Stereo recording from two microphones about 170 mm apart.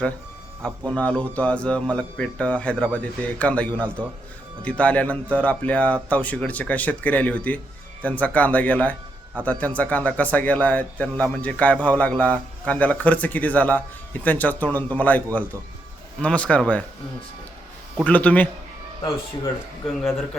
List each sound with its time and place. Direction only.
0.9 s speech: 10° left (ahead or behind)
18.0 s speech: 10° left (ahead or behind)